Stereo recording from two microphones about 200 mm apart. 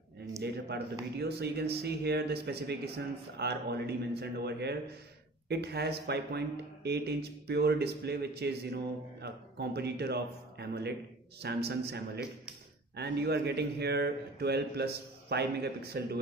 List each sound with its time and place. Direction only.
0.4 s a man's voice: 55° right (ahead or behind)